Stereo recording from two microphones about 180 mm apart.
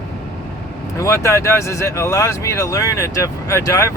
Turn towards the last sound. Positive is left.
turn(degrees=15)  # may be behind; listen again after turning